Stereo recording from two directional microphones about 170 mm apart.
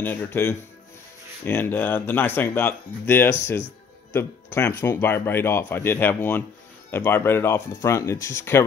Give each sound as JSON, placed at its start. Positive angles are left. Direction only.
{"t": 0.0, "sound": "speech", "side_deg": 10}